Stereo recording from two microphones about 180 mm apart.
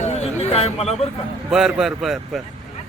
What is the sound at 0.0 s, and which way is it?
Chatter, 35° left (ahead or behind).